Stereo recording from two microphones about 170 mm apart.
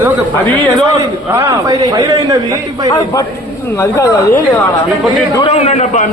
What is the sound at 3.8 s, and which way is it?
Speech, 20° left (ahead or behind).